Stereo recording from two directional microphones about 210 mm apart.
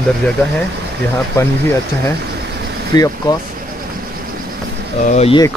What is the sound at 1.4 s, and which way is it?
Speech, 10° left (ahead or behind).